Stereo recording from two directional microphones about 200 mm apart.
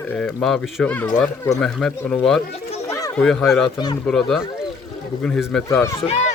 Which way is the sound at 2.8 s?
15° left (ahead or behind).